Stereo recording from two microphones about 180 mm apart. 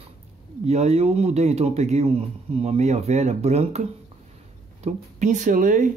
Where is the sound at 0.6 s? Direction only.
35° right (ahead or behind).